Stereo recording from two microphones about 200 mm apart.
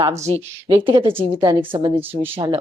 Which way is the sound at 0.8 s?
25° right (ahead or behind).